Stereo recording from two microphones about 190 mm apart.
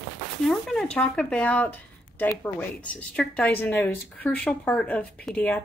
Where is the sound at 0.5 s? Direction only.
5° left (ahead or behind).